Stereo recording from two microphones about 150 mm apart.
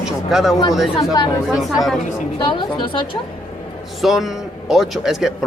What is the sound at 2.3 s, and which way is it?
Speech, 30° left (ahead or behind).